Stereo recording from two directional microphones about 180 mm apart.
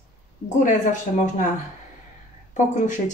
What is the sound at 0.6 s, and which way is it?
Speech, 45° left (ahead or behind).